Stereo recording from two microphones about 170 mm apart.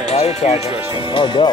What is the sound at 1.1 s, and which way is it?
Speech, 25° left (ahead or behind).